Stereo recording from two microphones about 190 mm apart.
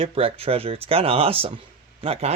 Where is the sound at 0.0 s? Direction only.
30° right (ahead or behind).